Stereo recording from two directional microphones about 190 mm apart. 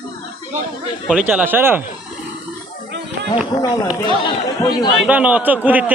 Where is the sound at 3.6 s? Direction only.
20° left (ahead or behind).